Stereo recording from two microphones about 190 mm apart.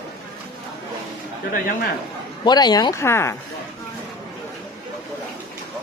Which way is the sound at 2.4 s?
20° left (ahead or behind).